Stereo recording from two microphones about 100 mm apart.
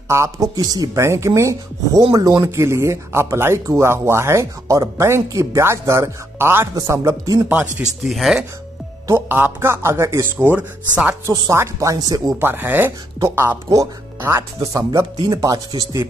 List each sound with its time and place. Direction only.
0.1 s speech: 35° right (ahead or behind)
8.0 s speech: centre (ahead or behind)
9.0 s speech: 25° right (ahead or behind)
10.3 s speech: 15° right (ahead or behind)
11.2 s speech: 30° right (ahead or behind)
12.4 s speech: 20° right (ahead or behind)